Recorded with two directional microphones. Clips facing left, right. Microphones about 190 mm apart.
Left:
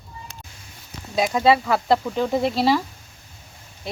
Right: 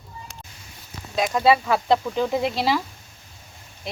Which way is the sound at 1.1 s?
10° left (ahead or behind).